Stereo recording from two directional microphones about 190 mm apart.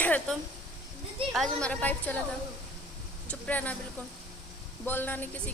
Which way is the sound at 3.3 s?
10° left (ahead or behind).